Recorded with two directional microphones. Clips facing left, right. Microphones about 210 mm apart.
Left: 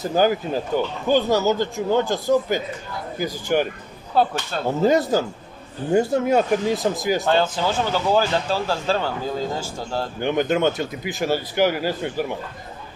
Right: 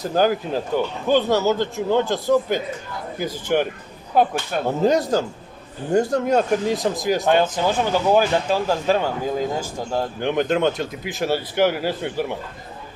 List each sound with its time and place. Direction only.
0.0 s speech: centre (ahead or behind)
4.1 s speech: 15° right (ahead or behind)
4.6 s speech: centre (ahead or behind)
7.2 s speech: 15° right (ahead or behind)
10.2 s speech: centre (ahead or behind)